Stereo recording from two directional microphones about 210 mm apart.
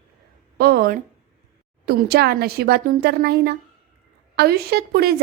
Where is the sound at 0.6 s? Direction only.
45° right (ahead or behind).